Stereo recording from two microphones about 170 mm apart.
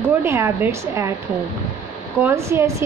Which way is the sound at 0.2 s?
15° right (ahead or behind).